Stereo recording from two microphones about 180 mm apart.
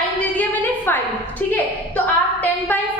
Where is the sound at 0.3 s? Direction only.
10° left (ahead or behind).